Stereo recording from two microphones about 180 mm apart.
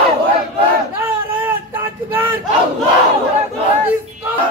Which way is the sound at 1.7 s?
10° right (ahead or behind).